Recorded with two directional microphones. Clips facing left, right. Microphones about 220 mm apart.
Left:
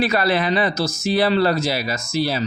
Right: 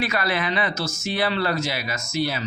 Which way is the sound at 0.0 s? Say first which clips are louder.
Left 6 dB; 35° left (ahead or behind).